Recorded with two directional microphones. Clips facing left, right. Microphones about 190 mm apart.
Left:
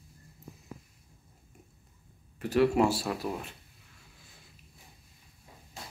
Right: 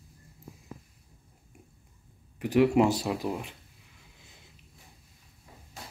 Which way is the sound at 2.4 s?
15° right (ahead or behind).